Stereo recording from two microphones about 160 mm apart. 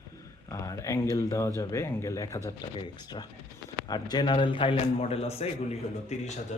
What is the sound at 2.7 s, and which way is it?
A man's voice, 30° left (ahead or behind).